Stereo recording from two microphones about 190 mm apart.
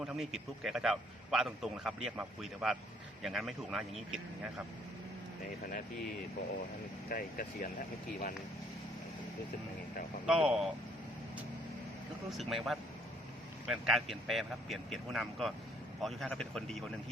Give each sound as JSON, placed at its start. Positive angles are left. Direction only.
{"t": 0.0, "sound": "a man's voice", "side_deg": -5}
{"t": 7.1, "sound": "speech", "side_deg": 50}
{"t": 10.2, "sound": "a man's voice", "side_deg": -5}
{"t": 12.4, "sound": "a man's voice", "side_deg": 0}